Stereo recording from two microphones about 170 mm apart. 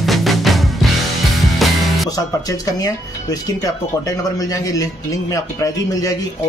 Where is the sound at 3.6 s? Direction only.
20° left (ahead or behind).